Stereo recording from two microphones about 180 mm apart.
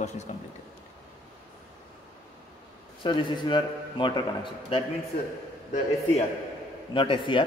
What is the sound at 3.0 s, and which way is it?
A man's voice, 25° left (ahead or behind).